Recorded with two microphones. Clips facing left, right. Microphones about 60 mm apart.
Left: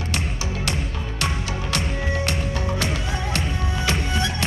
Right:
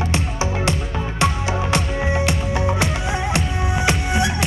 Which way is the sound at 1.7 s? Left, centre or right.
Centre.